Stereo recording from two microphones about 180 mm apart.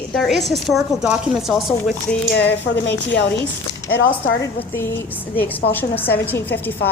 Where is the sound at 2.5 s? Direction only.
75° left (ahead or behind).